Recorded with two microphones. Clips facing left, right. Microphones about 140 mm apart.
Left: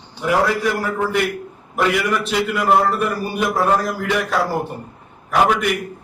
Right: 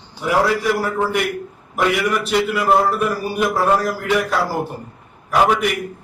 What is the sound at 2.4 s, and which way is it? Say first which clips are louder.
A man's voice: left 2 dB; centre (ahead or behind).